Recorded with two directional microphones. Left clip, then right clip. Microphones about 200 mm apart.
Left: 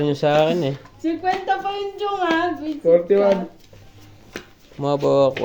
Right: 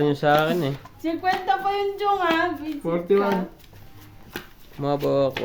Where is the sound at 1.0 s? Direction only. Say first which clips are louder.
Left 2 dB; 25° right (ahead or behind).